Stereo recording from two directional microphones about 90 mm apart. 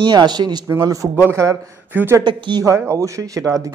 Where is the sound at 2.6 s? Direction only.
35° right (ahead or behind).